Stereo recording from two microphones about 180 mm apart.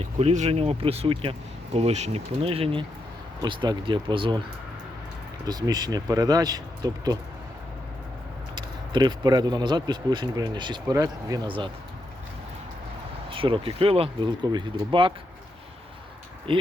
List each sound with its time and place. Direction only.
0.0 s speech: 40° right (ahead or behind)
5.5 s speech: 20° right (ahead or behind)
8.5 s speech: 25° right (ahead or behind)
13.3 s speech: 30° right (ahead or behind)
16.5 s speech: 30° right (ahead or behind)